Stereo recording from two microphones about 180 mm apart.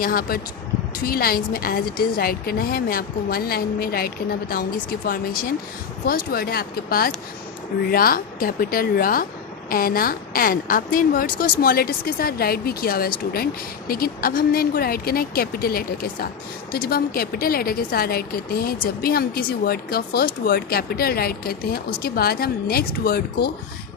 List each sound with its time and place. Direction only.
0.0 s a woman's voice: 55° left (ahead or behind)
6.1 s a woman's voice: 55° left (ahead or behind)